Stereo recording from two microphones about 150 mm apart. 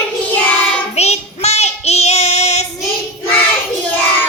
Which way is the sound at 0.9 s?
45° left (ahead or behind).